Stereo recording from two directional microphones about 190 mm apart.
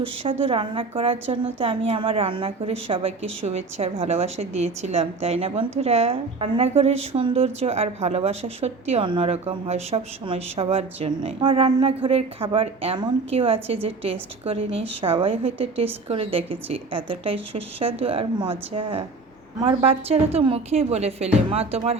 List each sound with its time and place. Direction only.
0.0 s a woman's voice: 30° right (ahead or behind)